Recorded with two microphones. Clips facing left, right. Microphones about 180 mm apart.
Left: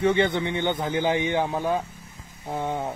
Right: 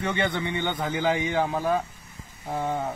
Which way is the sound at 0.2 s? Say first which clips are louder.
Left 4 dB; 20° left (ahead or behind).